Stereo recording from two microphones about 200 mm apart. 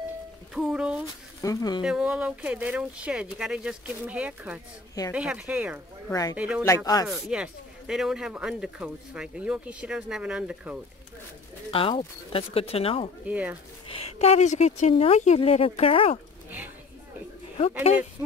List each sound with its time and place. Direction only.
0.6 s speech: 5° right (ahead or behind)
1.4 s speech: 20° left (ahead or behind)
1.8 s speech: 5° right (ahead or behind)
6.0 s speech: 15° left (ahead or behind)
6.3 s speech: 5° right (ahead or behind)
6.6 s speech: 15° left (ahead or behind)
7.1 s speech: 5° right (ahead or behind)
11.7 s speech: 25° left (ahead or behind)
13.3 s speech: 5° right (ahead or behind)
13.8 s a woman's voice: 30° left (ahead or behind)
16.4 s a sound: 10° right (ahead or behind)